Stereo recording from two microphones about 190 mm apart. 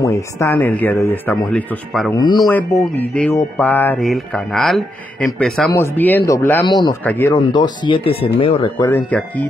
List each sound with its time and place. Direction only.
0.0 s speech: 15° left (ahead or behind)
3.0 s music: 10° left (ahead or behind)
5.7 s speech: 15° left (ahead or behind)
7.3 s speech: 20° left (ahead or behind)
9.1 s speech: 10° left (ahead or behind)